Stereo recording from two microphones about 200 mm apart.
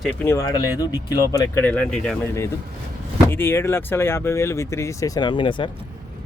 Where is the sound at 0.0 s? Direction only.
10° left (ahead or behind).